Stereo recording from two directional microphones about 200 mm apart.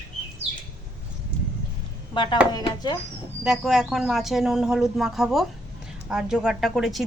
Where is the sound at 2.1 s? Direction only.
25° left (ahead or behind).